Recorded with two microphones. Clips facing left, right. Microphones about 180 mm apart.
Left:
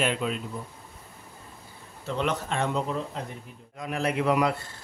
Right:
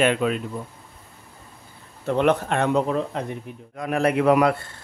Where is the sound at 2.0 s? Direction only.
60° right (ahead or behind).